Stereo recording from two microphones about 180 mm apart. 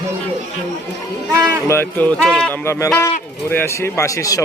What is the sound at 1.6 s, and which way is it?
Speech, 15° left (ahead or behind).